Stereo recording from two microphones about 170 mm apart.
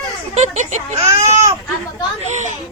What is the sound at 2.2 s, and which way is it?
Speech, 45° right (ahead or behind).